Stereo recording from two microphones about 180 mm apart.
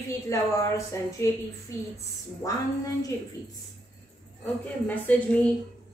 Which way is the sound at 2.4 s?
20° left (ahead or behind).